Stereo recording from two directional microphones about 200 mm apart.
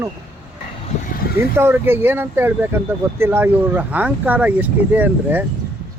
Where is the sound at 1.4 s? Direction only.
10° right (ahead or behind).